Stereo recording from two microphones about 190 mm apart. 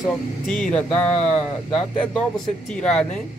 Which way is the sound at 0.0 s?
Centre (ahead or behind).